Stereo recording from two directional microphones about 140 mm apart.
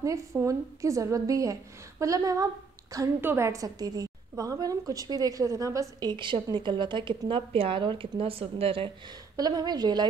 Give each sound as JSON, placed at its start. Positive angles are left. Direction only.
{"t": 0.0, "sound": "a woman's voice", "side_deg": -20}
{"t": 9.4, "sound": "a woman's voice", "side_deg": -30}